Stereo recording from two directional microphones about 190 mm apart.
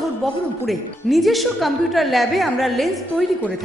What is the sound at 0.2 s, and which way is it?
A woman's voice, centre (ahead or behind).